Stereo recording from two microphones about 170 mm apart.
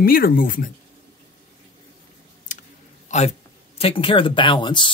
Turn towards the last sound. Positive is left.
turn(degrees=30)  # may be behind; listen again after turning